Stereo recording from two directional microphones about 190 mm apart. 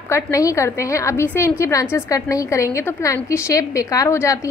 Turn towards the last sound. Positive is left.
turn(degrees=15)  # may be behind; listen again after turning